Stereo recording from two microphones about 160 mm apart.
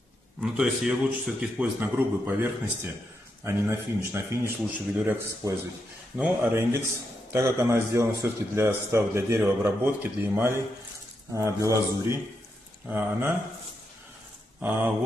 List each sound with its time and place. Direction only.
0.4 s a man's voice: 5° right (ahead or behind)